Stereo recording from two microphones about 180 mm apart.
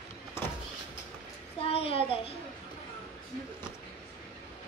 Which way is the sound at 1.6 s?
30° left (ahead or behind).